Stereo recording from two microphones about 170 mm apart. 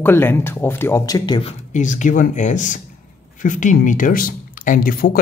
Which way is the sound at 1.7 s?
45° left (ahead or behind).